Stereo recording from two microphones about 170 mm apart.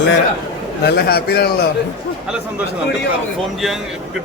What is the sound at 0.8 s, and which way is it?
Speech, 65° left (ahead or behind).